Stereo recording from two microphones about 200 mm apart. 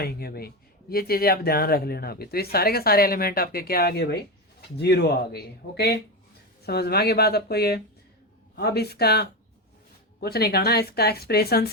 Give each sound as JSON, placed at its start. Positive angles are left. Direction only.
{"t": 0.0, "sound": "speech", "side_deg": 50}